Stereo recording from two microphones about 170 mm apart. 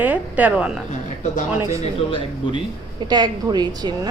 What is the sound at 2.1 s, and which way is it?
Speech, 30° left (ahead or behind).